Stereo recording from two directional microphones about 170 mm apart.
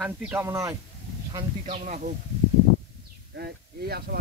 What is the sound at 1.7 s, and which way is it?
Speech, 45° right (ahead or behind).